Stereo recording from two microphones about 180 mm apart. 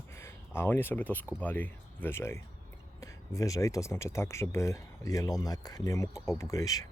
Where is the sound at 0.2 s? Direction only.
15° left (ahead or behind).